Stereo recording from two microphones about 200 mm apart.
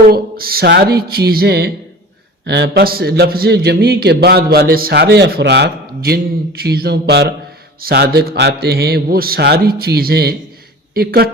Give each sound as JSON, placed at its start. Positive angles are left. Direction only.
{"t": 0.1, "sound": "a man's voice", "side_deg": -50}